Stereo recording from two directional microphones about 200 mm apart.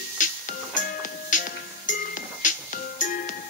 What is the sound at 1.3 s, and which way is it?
Music, 40° left (ahead or behind).